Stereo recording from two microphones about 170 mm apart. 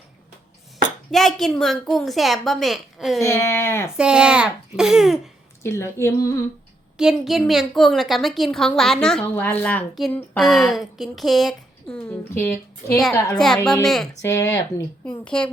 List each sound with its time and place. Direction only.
1.1 s a woman's voice: centre (ahead or behind)
3.2 s speech: 15° left (ahead or behind)
3.9 s a woman's voice: 5° right (ahead or behind)
5.6 s speech: 15° left (ahead or behind)
6.9 s a woman's voice: 5° right (ahead or behind); by 13.0 s 15° left (ahead or behind)
13.3 s a woman's voice: centre (ahead or behind)
14.2 s speech: 15° left (ahead or behind)
15.2 s speech: 5° left (ahead or behind)